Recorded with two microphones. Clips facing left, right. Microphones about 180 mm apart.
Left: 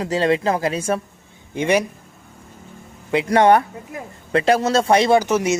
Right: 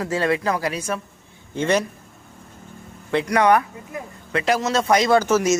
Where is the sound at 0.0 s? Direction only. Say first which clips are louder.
Left 3 dB; 20° left (ahead or behind).